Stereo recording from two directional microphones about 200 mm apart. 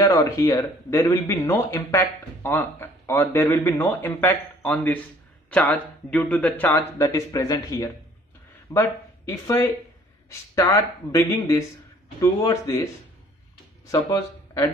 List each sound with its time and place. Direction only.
0.0 s speech: 15° left (ahead or behind)